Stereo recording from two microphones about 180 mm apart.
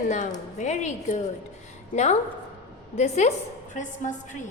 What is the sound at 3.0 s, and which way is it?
Speech, 35° left (ahead or behind).